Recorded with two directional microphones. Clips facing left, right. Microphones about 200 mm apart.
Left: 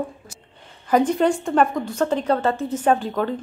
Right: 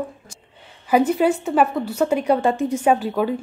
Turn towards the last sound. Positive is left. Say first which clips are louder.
# right 2 dB
turn(degrees=-10)  # may be behind; listen again after turning